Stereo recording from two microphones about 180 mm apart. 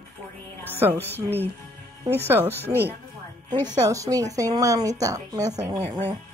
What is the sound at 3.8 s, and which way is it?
A woman's voice, 20° right (ahead or behind).